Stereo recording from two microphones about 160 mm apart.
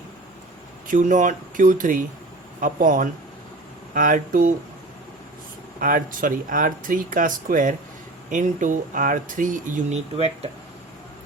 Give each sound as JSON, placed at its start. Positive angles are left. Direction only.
{"t": 0.9, "sound": "speech", "side_deg": -50}
{"t": 5.8, "sound": "speech", "side_deg": -60}
{"t": 10.2, "sound": "speech", "side_deg": -40}